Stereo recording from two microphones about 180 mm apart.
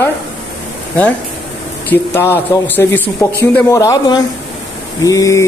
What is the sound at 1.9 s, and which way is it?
A man's voice, 15° left (ahead or behind).